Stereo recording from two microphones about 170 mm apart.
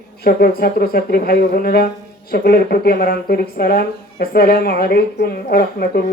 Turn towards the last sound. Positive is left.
turn(degrees=65)  # may be behind; listen again after turning